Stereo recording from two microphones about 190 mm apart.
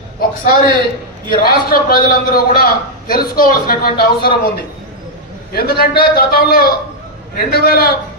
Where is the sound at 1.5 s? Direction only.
50° left (ahead or behind).